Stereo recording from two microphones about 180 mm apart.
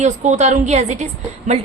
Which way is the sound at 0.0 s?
40° right (ahead or behind).